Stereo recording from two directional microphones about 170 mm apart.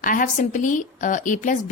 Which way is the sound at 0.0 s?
50° left (ahead or behind).